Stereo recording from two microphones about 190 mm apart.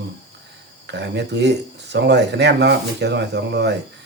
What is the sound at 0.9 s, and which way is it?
Speech, 65° right (ahead or behind).